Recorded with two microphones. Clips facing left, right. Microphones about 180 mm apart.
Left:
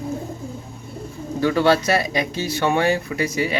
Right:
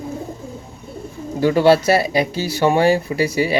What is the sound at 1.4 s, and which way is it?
Speech, 25° right (ahead or behind).